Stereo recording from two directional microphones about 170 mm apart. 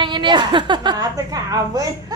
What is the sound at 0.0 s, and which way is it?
A woman's voice, 25° right (ahead or behind).